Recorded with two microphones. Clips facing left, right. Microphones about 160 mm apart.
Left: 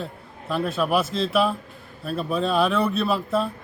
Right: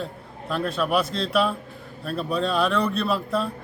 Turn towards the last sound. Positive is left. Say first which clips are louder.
# left 1 dB
turn(degrees=0)  # may be behind; listen again after turning